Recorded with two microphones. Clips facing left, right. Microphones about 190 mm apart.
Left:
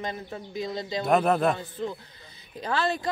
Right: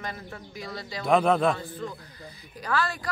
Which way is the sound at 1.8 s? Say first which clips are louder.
Left 3 dB; 20° left (ahead or behind).